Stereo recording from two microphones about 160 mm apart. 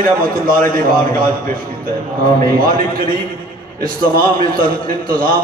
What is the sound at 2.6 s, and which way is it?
A man's voice, 65° right (ahead or behind).